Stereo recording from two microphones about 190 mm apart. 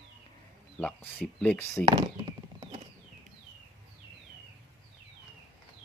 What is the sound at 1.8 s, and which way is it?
Clip-clop, 25° right (ahead or behind).